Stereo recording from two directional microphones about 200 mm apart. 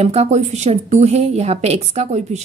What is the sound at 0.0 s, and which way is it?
A woman's voice, 35° right (ahead or behind).